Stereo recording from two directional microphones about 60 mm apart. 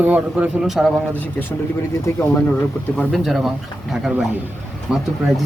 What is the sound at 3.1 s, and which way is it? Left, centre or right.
Speech, centre.